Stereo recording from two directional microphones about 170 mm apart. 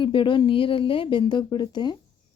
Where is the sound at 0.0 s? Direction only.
30° left (ahead or behind).